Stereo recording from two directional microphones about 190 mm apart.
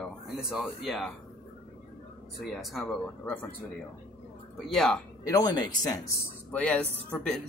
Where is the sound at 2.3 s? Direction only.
Centre (ahead or behind).